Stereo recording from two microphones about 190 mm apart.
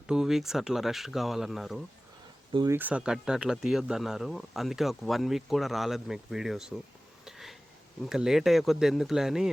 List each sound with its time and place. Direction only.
0.1 s speech: 5° right (ahead or behind)
2.5 s speech: 25° right (ahead or behind)
2.7 s speech: 5° right (ahead or behind)
7.3 s a sound: centre (ahead or behind)
8.0 s speech: 5° right (ahead or behind)